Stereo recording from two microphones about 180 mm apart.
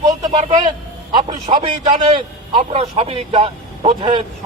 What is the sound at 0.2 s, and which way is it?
A man's voice, 20° right (ahead or behind).